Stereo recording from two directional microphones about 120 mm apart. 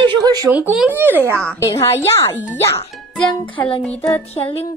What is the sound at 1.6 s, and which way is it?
Speech, 25° left (ahead or behind).